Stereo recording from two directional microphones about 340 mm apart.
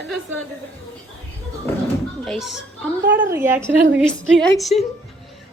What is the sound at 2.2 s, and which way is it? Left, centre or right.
A woman's voice, centre.